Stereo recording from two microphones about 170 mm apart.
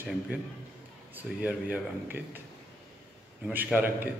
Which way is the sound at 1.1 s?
10° right (ahead or behind).